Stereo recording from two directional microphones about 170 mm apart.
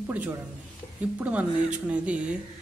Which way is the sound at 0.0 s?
10° right (ahead or behind).